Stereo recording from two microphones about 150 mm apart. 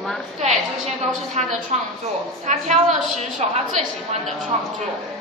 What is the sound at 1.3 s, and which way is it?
A woman's voice, 50° right (ahead or behind).